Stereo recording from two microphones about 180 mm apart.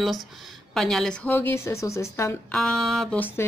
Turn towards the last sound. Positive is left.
turn(degrees=10)  # may be behind; listen again after turning